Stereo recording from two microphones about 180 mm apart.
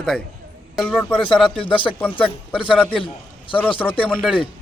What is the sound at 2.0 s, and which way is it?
A man's voice, 10° left (ahead or behind).